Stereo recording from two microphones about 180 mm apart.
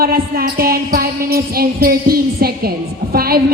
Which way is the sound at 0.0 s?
55° right (ahead or behind).